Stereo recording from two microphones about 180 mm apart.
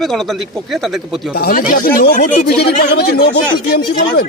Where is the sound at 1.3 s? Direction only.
55° left (ahead or behind).